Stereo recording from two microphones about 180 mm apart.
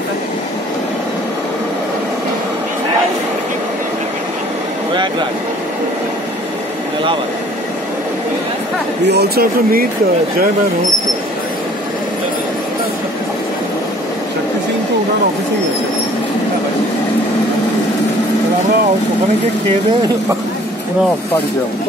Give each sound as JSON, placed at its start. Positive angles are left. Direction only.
{"t": 9.0, "sound": "speech", "side_deg": -65}